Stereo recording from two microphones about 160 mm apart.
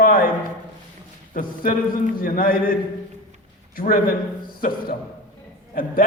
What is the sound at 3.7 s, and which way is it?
Speech, 65° left (ahead or behind).